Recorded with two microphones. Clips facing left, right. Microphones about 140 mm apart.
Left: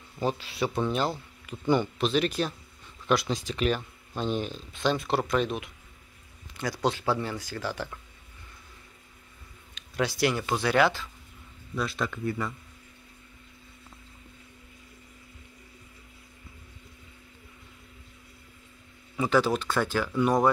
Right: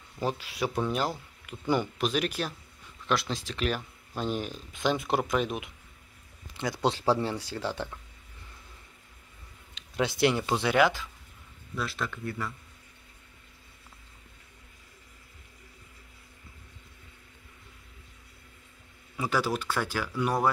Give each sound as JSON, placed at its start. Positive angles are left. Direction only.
{"t": 0.2, "sound": "speech", "side_deg": -10}
{"t": 9.9, "sound": "speech", "side_deg": -20}
{"t": 11.7, "sound": "speech", "side_deg": 0}
{"t": 19.1, "sound": "speech", "side_deg": -10}